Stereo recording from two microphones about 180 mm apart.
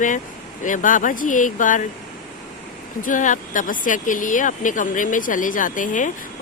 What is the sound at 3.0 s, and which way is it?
Speech, 45° left (ahead or behind).